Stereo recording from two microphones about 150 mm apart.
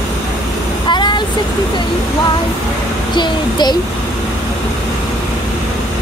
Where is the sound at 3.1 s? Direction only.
30° left (ahead or behind).